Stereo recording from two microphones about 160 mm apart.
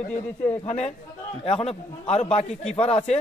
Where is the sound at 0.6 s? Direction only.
40° left (ahead or behind).